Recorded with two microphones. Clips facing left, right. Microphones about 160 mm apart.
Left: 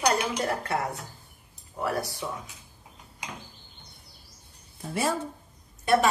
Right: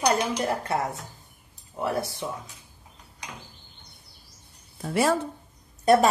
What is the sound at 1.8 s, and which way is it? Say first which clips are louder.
Speech: right 2 dB; 20° right (ahead or behind).